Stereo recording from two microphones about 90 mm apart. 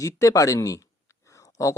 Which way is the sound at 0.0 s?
35° left (ahead or behind).